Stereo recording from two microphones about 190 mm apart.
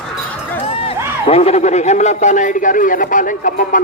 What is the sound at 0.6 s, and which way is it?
Run, 30° left (ahead or behind).